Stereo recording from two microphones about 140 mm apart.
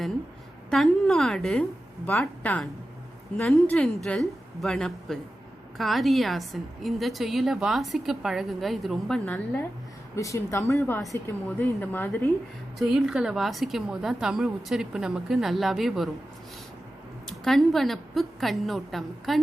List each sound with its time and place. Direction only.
0.7 s a woman's voice: centre (ahead or behind)
10.2 s a woman's voice: 20° left (ahead or behind)
12.8 s a woman's voice: 5° right (ahead or behind)
17.2 s a woman's voice: centre (ahead or behind)